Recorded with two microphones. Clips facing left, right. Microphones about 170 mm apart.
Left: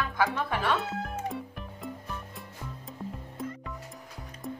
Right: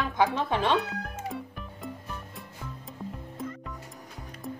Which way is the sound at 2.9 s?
Centre (ahead or behind).